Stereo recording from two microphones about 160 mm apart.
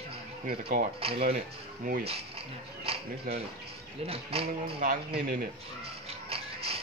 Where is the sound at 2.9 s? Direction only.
40° right (ahead or behind).